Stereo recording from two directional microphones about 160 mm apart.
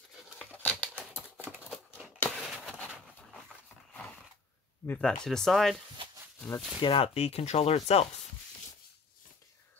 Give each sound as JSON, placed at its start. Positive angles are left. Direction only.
{"t": 0.4, "sound": "crumpling", "side_deg": 10}
{"t": 0.9, "sound": "typing", "side_deg": -10}
{"t": 1.7, "sound": "a sound", "side_deg": 0}
{"t": 4.8, "sound": "speech", "side_deg": 10}
{"t": 6.8, "sound": "speech", "side_deg": 35}